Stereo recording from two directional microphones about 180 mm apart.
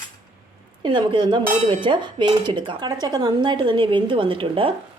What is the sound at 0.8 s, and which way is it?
Dishes, 25° right (ahead or behind).